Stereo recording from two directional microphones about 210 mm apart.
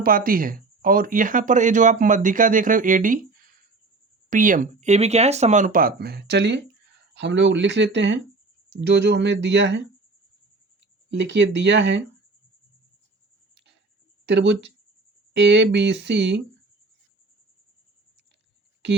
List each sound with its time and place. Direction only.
0.0 s speech: 45° right (ahead or behind)
11.1 s speech: 55° right (ahead or behind)
14.3 s speech: 55° right (ahead or behind)